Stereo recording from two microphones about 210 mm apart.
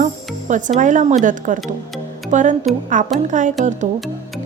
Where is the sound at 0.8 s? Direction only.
35° right (ahead or behind).